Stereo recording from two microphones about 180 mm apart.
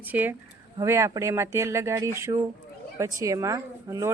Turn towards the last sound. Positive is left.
turn(degrees=-20)  # may be behind; listen again after turning